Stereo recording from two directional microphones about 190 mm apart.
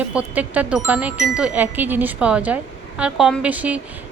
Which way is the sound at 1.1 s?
15° left (ahead or behind).